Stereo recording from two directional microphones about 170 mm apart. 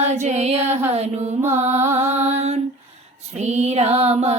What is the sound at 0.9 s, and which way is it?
Music, 40° right (ahead or behind).